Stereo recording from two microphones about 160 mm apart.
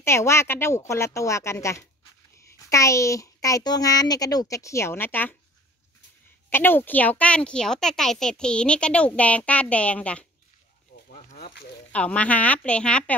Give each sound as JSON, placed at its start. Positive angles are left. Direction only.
{"t": 0.0, "sound": "a child's voice", "side_deg": 15}
{"t": 6.5, "sound": "speech", "side_deg": 15}
{"t": 11.3, "sound": "speech", "side_deg": 80}
{"t": 11.9, "sound": "speech", "side_deg": 10}